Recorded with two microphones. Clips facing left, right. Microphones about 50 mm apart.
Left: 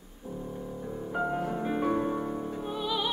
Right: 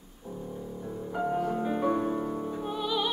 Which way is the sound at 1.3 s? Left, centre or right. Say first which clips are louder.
Right 2 dB; centre.